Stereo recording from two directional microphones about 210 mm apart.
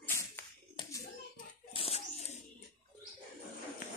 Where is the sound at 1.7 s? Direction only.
25° left (ahead or behind).